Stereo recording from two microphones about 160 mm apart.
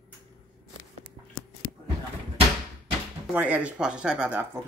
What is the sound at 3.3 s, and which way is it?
Speech, 10° right (ahead or behind).